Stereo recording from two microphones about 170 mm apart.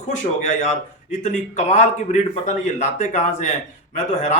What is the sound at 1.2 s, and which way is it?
Speech, 45° left (ahead or behind).